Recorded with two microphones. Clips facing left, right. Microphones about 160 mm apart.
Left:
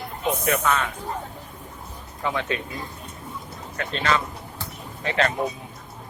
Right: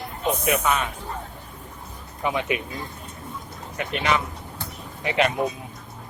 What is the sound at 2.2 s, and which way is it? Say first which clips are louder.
Speech: right 2 dB; 15° right (ahead or behind).